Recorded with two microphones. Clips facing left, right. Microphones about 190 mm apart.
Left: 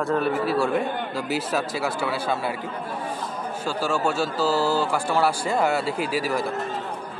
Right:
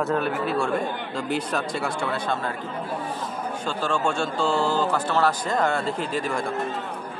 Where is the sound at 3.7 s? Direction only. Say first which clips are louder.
Left 1 dB; 5° left (ahead or behind).